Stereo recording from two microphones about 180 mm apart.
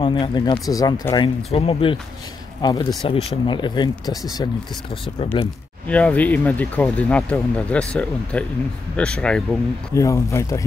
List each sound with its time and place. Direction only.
0.0 s speech: 25° left (ahead or behind)
5.2 s speech: 30° left (ahead or behind)
5.9 s speech: 5° left (ahead or behind)
9.9 s speech: 15° left (ahead or behind)